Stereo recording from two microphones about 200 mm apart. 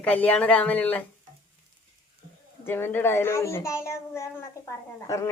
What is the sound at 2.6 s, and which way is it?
Speech, 10° left (ahead or behind).